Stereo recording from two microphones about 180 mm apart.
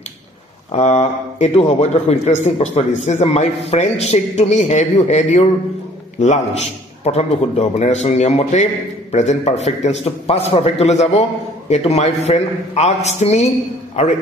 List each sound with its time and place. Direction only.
0.7 s a man's voice: 35° left (ahead or behind)